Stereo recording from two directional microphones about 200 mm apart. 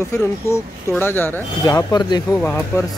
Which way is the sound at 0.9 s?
10° left (ahead or behind).